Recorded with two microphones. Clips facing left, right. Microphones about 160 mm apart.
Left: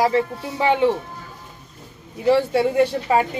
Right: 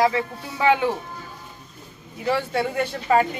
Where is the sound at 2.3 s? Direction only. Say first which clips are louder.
Left 6 dB; 30° left (ahead or behind).